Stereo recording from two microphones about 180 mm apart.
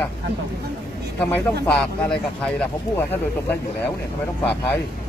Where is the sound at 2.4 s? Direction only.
5° left (ahead or behind).